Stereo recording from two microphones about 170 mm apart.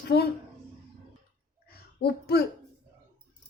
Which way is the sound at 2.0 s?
65° left (ahead or behind).